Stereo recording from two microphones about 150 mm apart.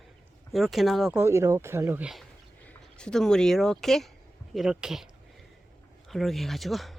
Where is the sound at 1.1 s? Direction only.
20° right (ahead or behind).